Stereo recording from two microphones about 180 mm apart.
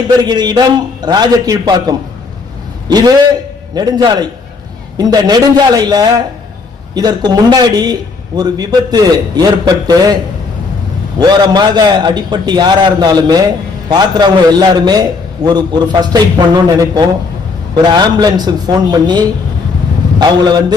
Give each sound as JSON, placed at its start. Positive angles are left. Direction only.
{"t": 0.3, "sound": "a man's voice", "side_deg": -25}
{"t": 11.2, "sound": "a man's voice", "side_deg": -25}